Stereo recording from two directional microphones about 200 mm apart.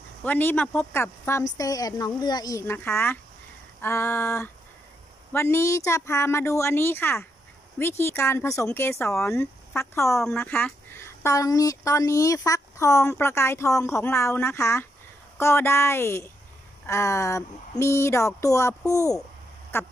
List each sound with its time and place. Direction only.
0.2 s speech: 10° left (ahead or behind)